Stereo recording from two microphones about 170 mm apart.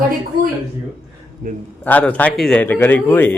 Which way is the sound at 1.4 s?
55° right (ahead or behind).